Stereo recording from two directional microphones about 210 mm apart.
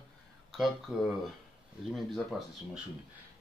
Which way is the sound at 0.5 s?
Centre (ahead or behind).